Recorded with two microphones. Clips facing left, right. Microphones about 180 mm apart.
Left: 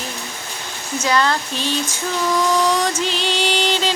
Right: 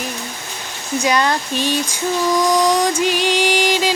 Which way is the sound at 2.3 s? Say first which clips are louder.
Right 2 dB; 15° right (ahead or behind).